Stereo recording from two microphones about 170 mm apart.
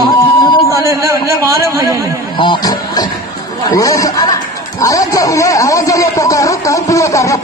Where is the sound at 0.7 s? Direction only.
15° right (ahead or behind).